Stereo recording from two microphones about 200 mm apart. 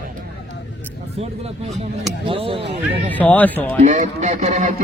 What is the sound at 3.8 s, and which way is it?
Speech, 40° right (ahead or behind).